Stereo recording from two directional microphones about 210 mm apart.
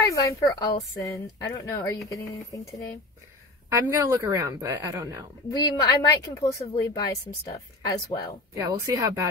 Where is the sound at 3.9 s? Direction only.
15° right (ahead or behind).